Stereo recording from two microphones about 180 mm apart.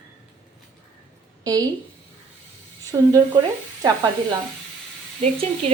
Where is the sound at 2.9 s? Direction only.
15° right (ahead or behind).